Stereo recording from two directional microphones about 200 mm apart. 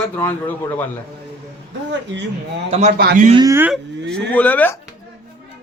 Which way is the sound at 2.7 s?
35° right (ahead or behind).